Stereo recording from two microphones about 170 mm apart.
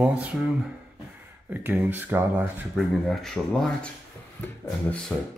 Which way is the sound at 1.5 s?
10° right (ahead or behind).